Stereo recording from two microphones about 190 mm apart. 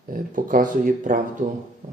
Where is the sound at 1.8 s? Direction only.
45° right (ahead or behind).